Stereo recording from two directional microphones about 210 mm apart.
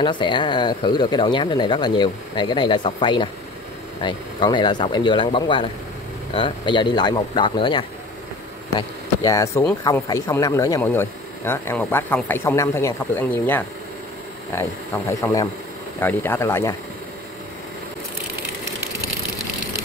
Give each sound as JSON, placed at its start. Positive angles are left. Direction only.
{"t": 0.0, "sound": "speech", "side_deg": 20}
{"t": 15.0, "sound": "speech", "side_deg": 15}